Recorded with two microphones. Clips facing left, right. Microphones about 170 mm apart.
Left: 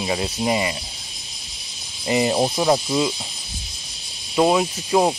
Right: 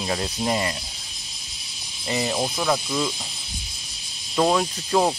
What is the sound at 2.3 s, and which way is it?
Speech, 30° left (ahead or behind).